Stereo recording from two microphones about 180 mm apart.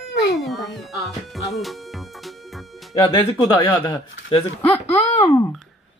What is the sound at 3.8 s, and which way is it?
Speech, 25° left (ahead or behind).